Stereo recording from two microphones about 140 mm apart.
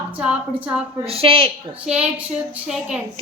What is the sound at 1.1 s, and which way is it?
Speech, 40° right (ahead or behind).